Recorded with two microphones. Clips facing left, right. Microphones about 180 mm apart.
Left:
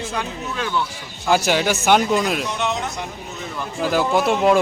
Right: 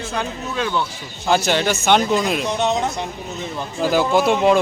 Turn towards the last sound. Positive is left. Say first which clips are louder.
# right 1 dB
turn(degrees=0)  # may be behind; listen again after turning